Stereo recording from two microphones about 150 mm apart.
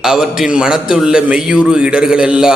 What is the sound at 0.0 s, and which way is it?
A man's voice, centre (ahead or behind).